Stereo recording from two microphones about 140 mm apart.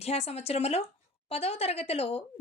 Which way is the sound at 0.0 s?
45° left (ahead or behind).